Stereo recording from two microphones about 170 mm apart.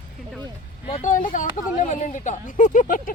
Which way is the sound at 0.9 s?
50° left (ahead or behind).